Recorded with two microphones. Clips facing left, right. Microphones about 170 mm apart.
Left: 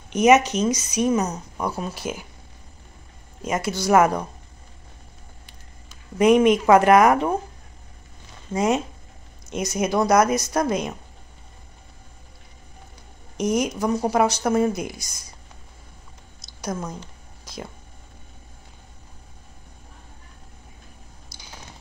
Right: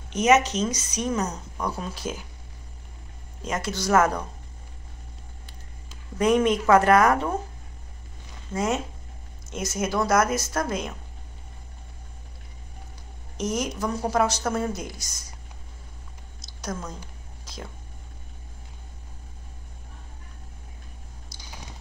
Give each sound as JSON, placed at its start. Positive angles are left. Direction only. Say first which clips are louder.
{"t": 0.1, "sound": "a woman's voice", "louder": "left 4 dB", "side_deg": 10}
{"t": 3.4, "sound": "a woman's voice", "louder": "left 4 dB", "side_deg": 10}
{"t": 6.1, "sound": "a woman's voice", "louder": "left 5 dB", "side_deg": 15}
{"t": 8.5, "sound": "a woman's voice", "louder": "left 4 dB", "side_deg": 15}
{"t": 13.4, "sound": "a woman's voice", "louder": "left 5 dB", "side_deg": 15}
{"t": 16.3, "sound": "a sound", "louder": "left 4 dB", "side_deg": 10}